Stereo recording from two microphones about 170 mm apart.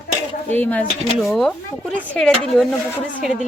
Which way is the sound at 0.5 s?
10° left (ahead or behind).